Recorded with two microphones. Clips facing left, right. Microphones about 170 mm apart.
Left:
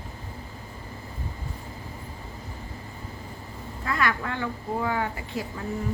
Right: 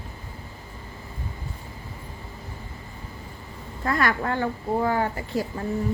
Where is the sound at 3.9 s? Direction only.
40° right (ahead or behind).